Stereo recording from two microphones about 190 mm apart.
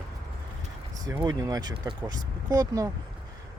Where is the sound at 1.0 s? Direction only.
20° right (ahead or behind).